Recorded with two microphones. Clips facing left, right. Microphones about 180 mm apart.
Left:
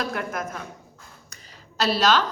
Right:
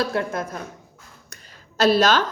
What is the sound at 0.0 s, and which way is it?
Speech, 30° right (ahead or behind).